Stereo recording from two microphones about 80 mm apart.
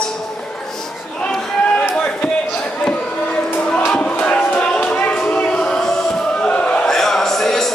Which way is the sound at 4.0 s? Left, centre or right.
Centre.